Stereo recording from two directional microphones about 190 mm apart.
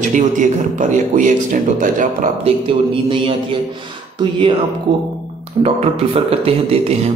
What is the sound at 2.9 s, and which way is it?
Speech, 25° right (ahead or behind).